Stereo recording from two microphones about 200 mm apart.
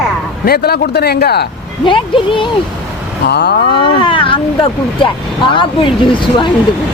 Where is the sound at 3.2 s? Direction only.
55° left (ahead or behind).